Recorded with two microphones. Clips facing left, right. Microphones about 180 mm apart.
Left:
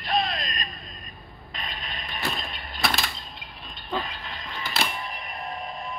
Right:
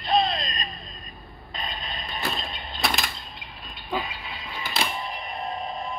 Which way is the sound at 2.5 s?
20° right (ahead or behind).